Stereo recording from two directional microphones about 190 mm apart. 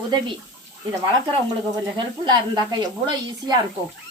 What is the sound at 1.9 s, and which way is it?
A woman's voice, 20° right (ahead or behind).